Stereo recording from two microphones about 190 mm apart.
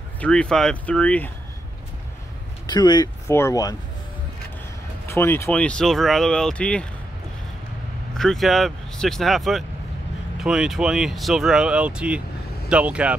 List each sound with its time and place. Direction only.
0.2 s speech: 5° left (ahead or behind)
2.6 s speech: 20° left (ahead or behind)
5.0 s speech: 15° left (ahead or behind)
8.2 s speech: centre (ahead or behind)